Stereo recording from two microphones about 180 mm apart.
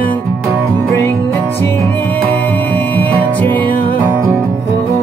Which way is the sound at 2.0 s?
10° left (ahead or behind).